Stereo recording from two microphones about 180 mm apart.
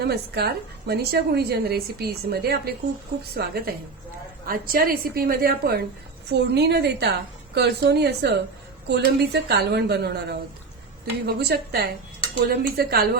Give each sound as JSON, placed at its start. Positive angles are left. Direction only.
{"t": 0.0, "sound": "a woman's voice", "side_deg": -60}
{"t": 6.5, "sound": "a woman's voice", "side_deg": -65}